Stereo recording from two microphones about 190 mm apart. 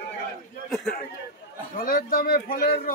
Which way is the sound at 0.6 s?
Centre (ahead or behind).